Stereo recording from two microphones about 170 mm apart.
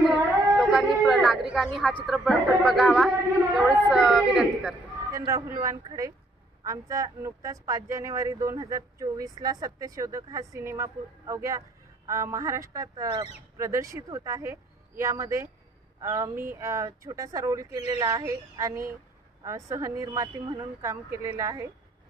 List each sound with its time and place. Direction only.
0.6 s vehicle: centre (ahead or behind)
1.5 s a woman's voice: centre (ahead or behind)
5.1 s speech: 20° right (ahead or behind)